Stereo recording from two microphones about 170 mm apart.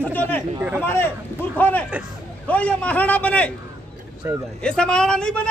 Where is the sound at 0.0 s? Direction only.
10° left (ahead or behind).